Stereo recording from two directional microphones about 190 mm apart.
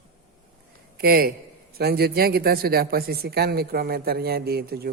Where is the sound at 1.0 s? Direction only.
55° right (ahead or behind).